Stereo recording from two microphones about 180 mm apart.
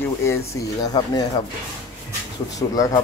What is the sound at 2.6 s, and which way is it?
Speech, 20° left (ahead or behind).